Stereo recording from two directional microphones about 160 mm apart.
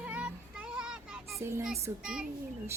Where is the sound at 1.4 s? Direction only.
15° right (ahead or behind).